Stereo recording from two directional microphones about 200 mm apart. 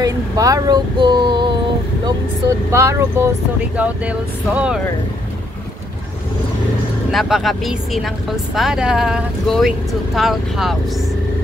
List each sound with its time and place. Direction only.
0.0 s speech: 20° right (ahead or behind)
2.7 s speech: 15° right (ahead or behind)
7.1 s speech: centre (ahead or behind)